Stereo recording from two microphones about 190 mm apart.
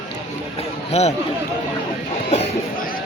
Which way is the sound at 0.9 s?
35° left (ahead or behind).